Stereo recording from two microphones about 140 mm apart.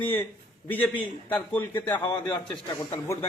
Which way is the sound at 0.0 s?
15° left (ahead or behind).